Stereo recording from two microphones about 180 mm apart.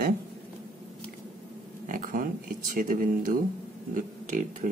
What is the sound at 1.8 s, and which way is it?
Speech, 50° right (ahead or behind).